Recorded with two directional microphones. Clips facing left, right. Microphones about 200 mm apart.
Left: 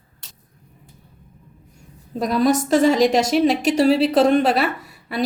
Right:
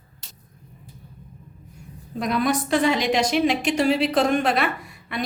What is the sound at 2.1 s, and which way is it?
A woman's voice, 40° left (ahead or behind).